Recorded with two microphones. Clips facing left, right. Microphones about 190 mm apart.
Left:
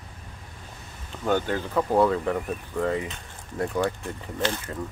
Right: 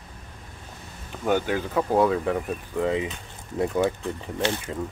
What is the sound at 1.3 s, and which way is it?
Speech, 10° right (ahead or behind).